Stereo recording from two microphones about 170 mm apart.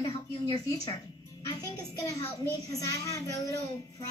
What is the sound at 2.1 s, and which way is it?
A child's voice, 20° left (ahead or behind).